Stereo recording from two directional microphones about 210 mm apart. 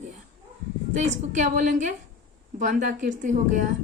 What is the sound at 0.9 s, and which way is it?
A woman's voice, 35° right (ahead or behind).